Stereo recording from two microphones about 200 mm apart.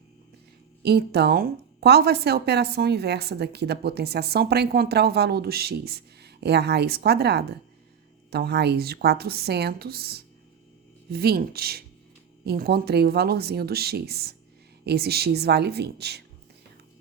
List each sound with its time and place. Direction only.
0.8 s a woman's voice: 55° right (ahead or behind)